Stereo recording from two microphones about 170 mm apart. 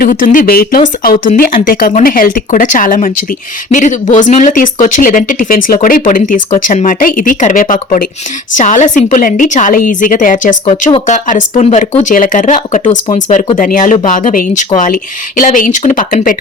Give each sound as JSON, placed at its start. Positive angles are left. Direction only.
{"t": 0.0, "sound": "speech", "side_deg": 55}